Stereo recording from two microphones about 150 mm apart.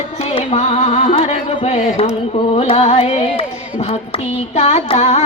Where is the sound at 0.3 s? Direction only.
45° left (ahead or behind).